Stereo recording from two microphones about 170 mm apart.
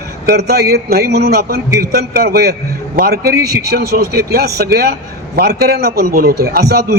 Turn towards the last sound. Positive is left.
turn(degrees=-70)  # may be behind; listen again after turning